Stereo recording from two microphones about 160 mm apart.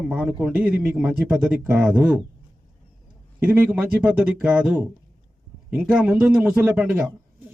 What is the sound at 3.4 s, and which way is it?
A man's voice, 10° right (ahead or behind).